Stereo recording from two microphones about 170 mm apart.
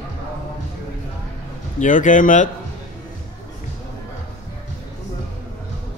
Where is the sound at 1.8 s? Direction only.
50° left (ahead or behind).